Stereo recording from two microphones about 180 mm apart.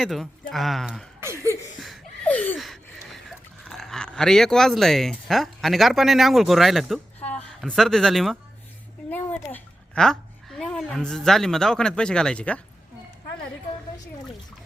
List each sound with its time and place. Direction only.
0.0 s speech: centre (ahead or behind)
1.2 s chuckle: 15° right (ahead or behind)
1.8 s a sound: 5° left (ahead or behind)
7.3 s a woman's voice: 5° left (ahead or behind)